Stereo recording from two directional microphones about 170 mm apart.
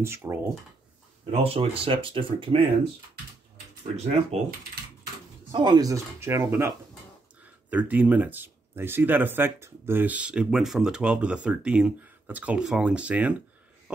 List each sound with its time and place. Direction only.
0.0 s speech: 15° right (ahead or behind)
1.3 s speech: 35° right (ahead or behind)
3.8 s speech: 40° right (ahead or behind)
5.5 s speech: 25° right (ahead or behind); by 13.4 s 10° right (ahead or behind)